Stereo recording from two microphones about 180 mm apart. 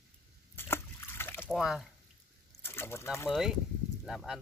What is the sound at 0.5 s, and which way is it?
Slosh, 15° left (ahead or behind).